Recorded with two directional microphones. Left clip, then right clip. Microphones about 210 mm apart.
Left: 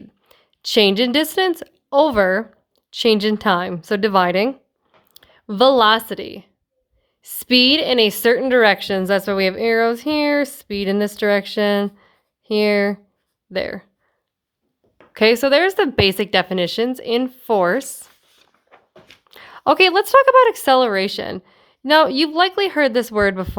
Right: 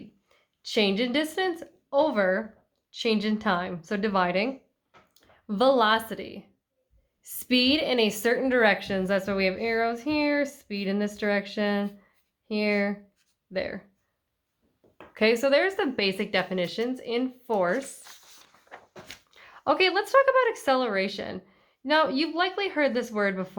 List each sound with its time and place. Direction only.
0.3 s a woman's voice: 45° left (ahead or behind)
15.1 s a woman's voice: 45° left (ahead or behind)
19.3 s a woman's voice: 50° left (ahead or behind)